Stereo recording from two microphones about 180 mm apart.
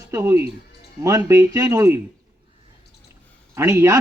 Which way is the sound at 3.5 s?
15° right (ahead or behind).